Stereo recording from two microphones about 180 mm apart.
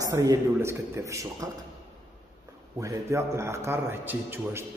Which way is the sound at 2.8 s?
15° right (ahead or behind).